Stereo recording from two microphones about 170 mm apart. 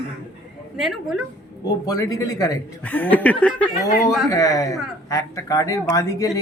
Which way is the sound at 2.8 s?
10° left (ahead or behind).